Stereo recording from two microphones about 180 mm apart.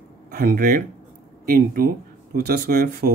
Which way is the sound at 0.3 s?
55° right (ahead or behind).